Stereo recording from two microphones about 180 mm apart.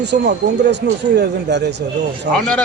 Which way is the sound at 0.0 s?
75° right (ahead or behind).